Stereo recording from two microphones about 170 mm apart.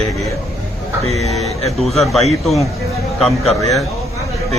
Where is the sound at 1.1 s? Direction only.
40° right (ahead or behind).